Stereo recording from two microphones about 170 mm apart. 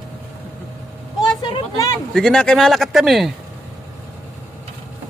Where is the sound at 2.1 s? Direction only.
5° left (ahead or behind).